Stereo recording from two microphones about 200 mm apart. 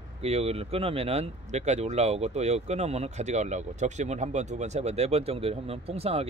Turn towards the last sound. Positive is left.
turn(degrees=-30)  # may be behind; listen again after turning